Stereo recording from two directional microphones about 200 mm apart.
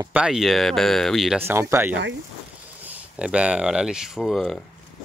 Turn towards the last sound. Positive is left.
turn(degrees=0)  # may be behind; listen again after turning